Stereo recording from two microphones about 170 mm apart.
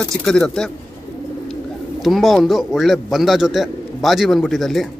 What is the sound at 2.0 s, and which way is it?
A man's voice, centre (ahead or behind).